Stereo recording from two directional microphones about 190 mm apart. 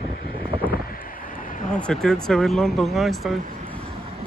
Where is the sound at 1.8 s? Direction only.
5° left (ahead or behind).